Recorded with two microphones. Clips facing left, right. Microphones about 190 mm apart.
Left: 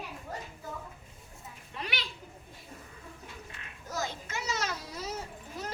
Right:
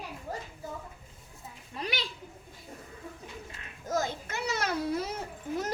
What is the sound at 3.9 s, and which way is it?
Children playing, 50° right (ahead or behind).